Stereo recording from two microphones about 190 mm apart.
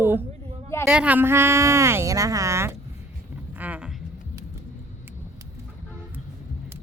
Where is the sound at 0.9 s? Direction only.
5° right (ahead or behind).